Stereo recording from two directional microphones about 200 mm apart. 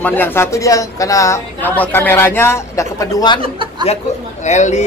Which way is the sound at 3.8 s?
35° left (ahead or behind).